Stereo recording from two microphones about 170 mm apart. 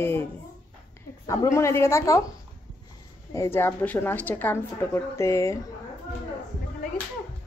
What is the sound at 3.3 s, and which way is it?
A woman's voice, 15° left (ahead or behind).